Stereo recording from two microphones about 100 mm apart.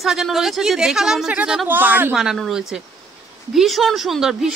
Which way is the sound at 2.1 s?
Centre (ahead or behind).